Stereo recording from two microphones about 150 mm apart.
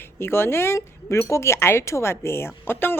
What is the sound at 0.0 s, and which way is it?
A woman's voice, 15° left (ahead or behind).